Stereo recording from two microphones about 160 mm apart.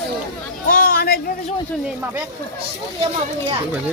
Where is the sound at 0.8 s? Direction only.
70° left (ahead or behind).